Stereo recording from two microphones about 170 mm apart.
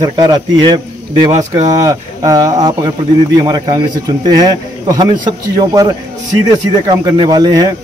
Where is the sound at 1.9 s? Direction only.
20° right (ahead or behind).